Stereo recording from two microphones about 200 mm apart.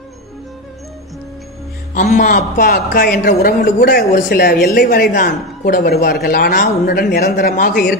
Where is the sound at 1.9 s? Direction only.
40° left (ahead or behind).